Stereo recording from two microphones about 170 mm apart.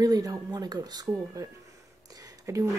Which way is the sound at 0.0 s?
20° right (ahead or behind).